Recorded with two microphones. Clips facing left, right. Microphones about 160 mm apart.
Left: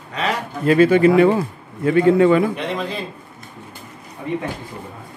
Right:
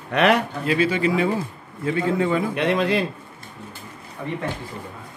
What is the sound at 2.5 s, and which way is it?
Speech, 70° right (ahead or behind).